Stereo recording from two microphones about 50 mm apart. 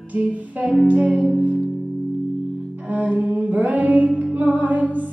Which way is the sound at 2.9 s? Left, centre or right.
Right.